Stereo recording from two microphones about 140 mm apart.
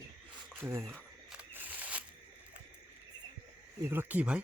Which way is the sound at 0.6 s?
20° right (ahead or behind).